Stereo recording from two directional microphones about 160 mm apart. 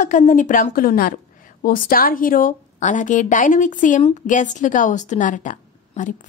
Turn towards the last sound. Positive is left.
turn(degrees=50)  # may be behind; listen again after turning